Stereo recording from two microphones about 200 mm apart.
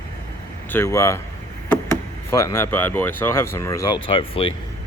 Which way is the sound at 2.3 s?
15° left (ahead or behind).